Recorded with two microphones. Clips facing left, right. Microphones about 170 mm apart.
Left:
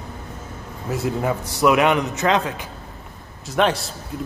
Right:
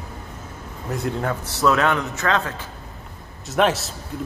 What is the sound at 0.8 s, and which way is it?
A man's voice, 5° left (ahead or behind).